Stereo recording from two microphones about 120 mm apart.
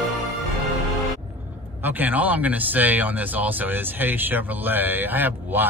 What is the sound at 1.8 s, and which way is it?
Speech, 15° right (ahead or behind).